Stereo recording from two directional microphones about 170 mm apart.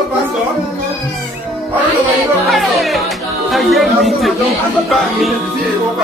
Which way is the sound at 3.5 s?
Centre (ahead or behind).